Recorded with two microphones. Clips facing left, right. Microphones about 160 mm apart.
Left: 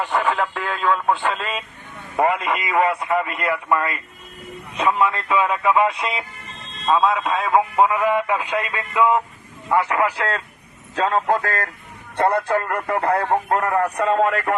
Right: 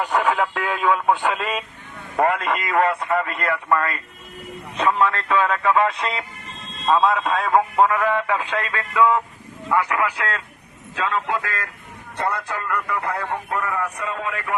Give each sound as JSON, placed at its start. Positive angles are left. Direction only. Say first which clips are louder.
{"t": 0.0, "sound": "speech", "louder": "right 1 dB", "side_deg": -10}
{"t": 2.1, "sound": "a man's voice", "louder": "even", "side_deg": 0}
{"t": 7.9, "sound": "a man's voice", "louder": "left 1 dB", "side_deg": 15}